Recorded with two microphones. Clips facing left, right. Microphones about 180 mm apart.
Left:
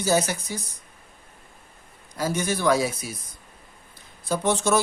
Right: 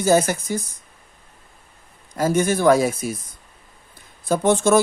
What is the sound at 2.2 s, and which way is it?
Speech, 50° right (ahead or behind).